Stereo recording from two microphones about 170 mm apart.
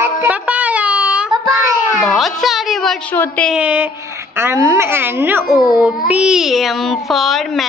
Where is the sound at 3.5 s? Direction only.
5° right (ahead or behind).